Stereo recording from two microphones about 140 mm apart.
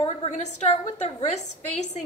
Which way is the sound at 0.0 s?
50° left (ahead or behind).